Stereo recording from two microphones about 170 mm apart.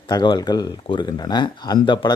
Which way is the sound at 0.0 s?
30° left (ahead or behind).